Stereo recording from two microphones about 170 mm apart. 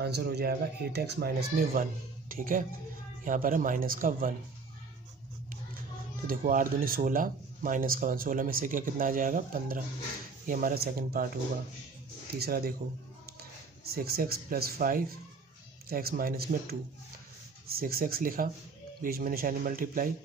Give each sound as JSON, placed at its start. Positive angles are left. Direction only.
{"t": 0.0, "sound": "speech", "side_deg": -75}
{"t": 6.2, "sound": "speech", "side_deg": -55}
{"t": 12.4, "sound": "speech", "side_deg": -60}
{"t": 17.7, "sound": "speech", "side_deg": -60}